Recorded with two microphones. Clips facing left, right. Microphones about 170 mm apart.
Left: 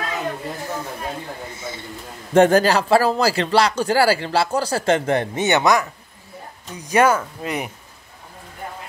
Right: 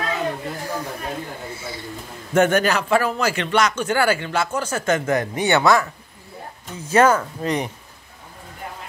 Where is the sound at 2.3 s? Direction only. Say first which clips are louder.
Left 3 dB; 30° left (ahead or behind); by 7.2 s 10° left (ahead or behind).